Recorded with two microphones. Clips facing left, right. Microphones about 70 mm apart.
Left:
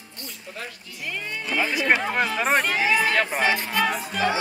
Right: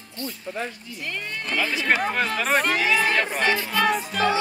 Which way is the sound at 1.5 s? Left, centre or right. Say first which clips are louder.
Left 1 dB; centre.